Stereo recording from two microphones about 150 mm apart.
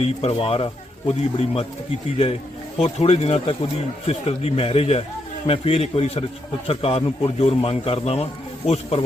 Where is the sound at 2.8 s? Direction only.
45° left (ahead or behind).